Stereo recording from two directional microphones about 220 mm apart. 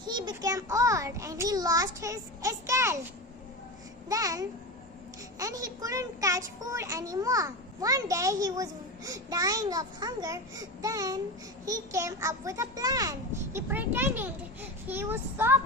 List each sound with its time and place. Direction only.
0.0 s a child's voice: 20° right (ahead or behind)
4.1 s a child's voice: 15° right (ahead or behind)